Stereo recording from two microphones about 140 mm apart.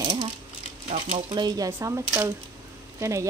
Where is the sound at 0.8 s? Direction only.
45° right (ahead or behind).